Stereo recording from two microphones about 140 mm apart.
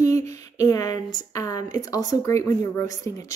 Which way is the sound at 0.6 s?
25° left (ahead or behind).